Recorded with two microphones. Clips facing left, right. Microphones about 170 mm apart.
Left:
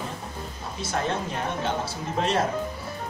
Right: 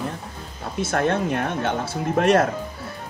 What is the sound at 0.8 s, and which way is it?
Speech, 60° right (ahead or behind).